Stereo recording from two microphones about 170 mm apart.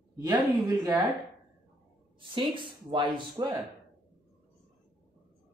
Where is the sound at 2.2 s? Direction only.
30° right (ahead or behind).